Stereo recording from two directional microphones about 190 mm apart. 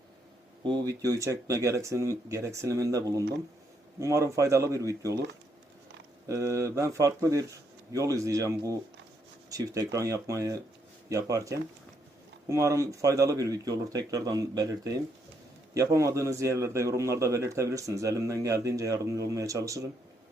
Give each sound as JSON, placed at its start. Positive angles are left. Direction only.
{"t": 0.6, "sound": "a man's voice", "side_deg": -20}
{"t": 6.2, "sound": "a man's voice", "side_deg": -15}